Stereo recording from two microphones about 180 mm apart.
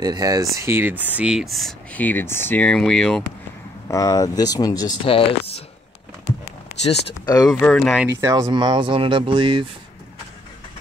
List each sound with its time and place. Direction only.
0.0 s speech: 20° right (ahead or behind); by 3.3 s 5° left (ahead or behind)
3.9 s speech: 20° left (ahead or behind)
6.8 s speech: 35° left (ahead or behind)
7.4 s speech: 5° left (ahead or behind)
8.2 s speech: 20° right (ahead or behind)